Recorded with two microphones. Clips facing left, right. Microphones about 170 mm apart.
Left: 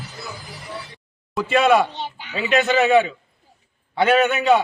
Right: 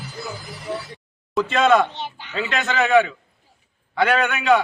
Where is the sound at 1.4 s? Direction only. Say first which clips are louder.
Left 1 dB; 15° left (ahead or behind).